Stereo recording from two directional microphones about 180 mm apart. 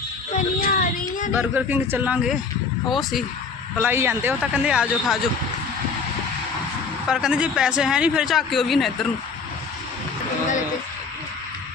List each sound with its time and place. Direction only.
0.3 s a sound: 50° left (ahead or behind)
1.3 s a man's voice: 10° right (ahead or behind)
3.8 s a man's voice: 10° right (ahead or behind)
7.1 s speech: 5° right (ahead or behind)